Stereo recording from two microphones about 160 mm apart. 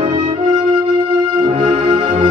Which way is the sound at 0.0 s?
35° right (ahead or behind).